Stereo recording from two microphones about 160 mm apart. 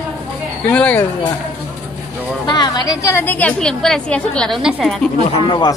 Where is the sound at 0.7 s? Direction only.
10° left (ahead or behind).